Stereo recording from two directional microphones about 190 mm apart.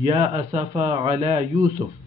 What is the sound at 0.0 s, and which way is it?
Speech, 30° right (ahead or behind).